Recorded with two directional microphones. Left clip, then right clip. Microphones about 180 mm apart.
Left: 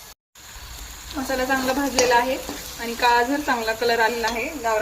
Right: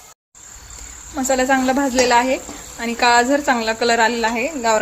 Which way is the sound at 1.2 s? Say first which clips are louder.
Right 6 dB; 45° right (ahead or behind).